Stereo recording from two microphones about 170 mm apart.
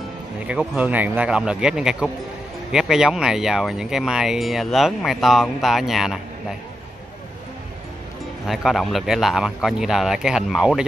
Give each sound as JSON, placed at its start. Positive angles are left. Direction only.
{"t": 0.5, "sound": "speech", "side_deg": -10}
{"t": 8.5, "sound": "speech", "side_deg": 0}